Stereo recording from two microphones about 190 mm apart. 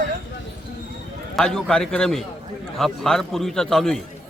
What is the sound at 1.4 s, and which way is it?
A man's voice, centre (ahead or behind).